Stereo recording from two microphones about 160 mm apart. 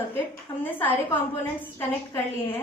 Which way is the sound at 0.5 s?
25° left (ahead or behind).